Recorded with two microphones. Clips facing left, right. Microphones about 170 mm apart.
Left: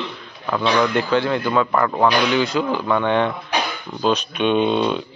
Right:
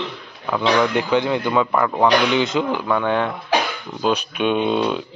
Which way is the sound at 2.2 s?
20° right (ahead or behind).